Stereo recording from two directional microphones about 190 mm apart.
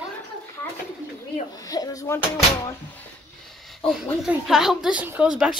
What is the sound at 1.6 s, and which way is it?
Slap, 15° left (ahead or behind).